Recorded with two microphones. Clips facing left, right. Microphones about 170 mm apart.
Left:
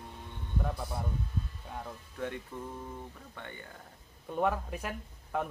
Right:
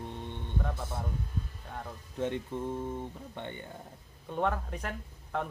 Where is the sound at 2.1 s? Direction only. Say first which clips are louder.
Right 6 dB; 25° right (ahead or behind).